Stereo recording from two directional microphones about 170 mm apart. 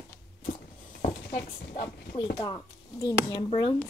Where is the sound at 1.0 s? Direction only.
55° left (ahead or behind).